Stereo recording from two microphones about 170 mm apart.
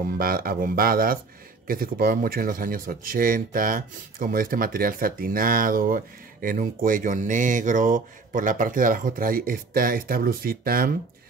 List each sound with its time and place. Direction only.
0.2 s speech: 60° right (ahead or behind)